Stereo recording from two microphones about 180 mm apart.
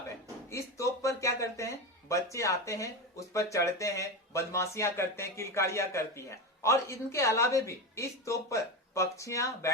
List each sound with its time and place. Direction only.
0.5 s speech: 15° left (ahead or behind)